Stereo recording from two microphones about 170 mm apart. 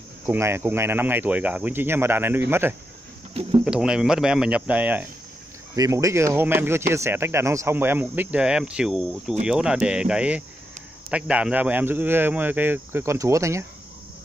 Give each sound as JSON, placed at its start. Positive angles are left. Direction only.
{"t": 0.3, "sound": "speech", "side_deg": -15}
{"t": 5.8, "sound": "speech", "side_deg": -20}